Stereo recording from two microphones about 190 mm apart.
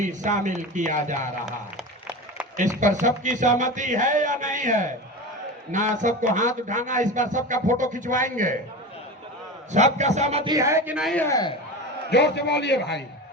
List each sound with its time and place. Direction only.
0.0 s a man's voice: 40° right (ahead or behind)
2.8 s a man's voice: 40° right (ahead or behind)
9.7 s a man's voice: 40° right (ahead or behind)
10.5 s speech: 15° right (ahead or behind)
11.1 s a man's voice: 10° left (ahead or behind)
12.1 s a man's voice: 65° left (ahead or behind)